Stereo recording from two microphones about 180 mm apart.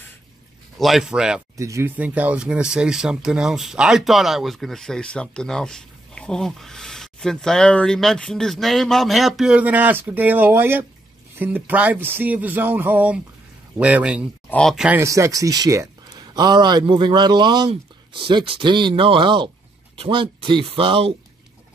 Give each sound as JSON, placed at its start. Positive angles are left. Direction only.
{"t": 0.7, "sound": "speech", "side_deg": 0}
{"t": 1.6, "sound": "speech", "side_deg": -15}
{"t": 15.0, "sound": "speech", "side_deg": -15}